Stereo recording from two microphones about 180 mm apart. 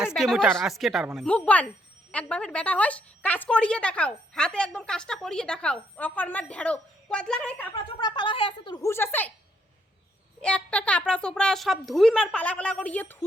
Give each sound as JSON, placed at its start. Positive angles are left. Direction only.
{"t": 0.2, "sound": "a woman's voice", "side_deg": 0}
{"t": 7.9, "sound": "a woman's voice", "side_deg": 25}
{"t": 10.4, "sound": "a woman's voice", "side_deg": 5}